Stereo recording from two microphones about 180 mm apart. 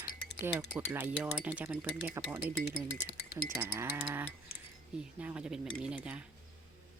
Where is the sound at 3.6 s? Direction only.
15° right (ahead or behind).